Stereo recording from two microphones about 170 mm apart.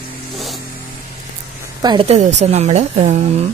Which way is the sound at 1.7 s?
25° right (ahead or behind).